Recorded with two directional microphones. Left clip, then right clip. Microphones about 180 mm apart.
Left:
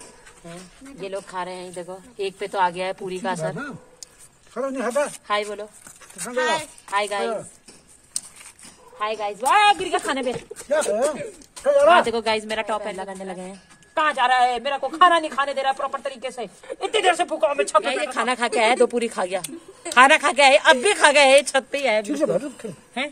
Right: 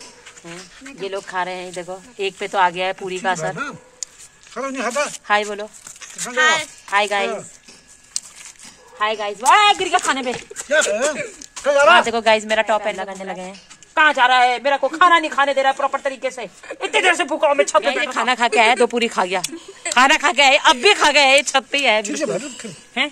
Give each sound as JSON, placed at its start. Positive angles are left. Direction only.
{"t": 1.0, "sound": "speech", "side_deg": -35}
{"t": 4.6, "sound": "speech", "side_deg": 35}
{"t": 5.2, "sound": "speech", "side_deg": -30}
{"t": 6.3, "sound": "speech", "side_deg": -5}
{"t": 6.9, "sound": "speech", "side_deg": -30}
{"t": 8.2, "sound": "a sound", "side_deg": 40}
{"t": 8.9, "sound": "speech", "side_deg": -25}
{"t": 11.6, "sound": "speech", "side_deg": 35}
{"t": 12.1, "sound": "speech", "side_deg": -25}
{"t": 22.1, "sound": "a woman's voice", "side_deg": 50}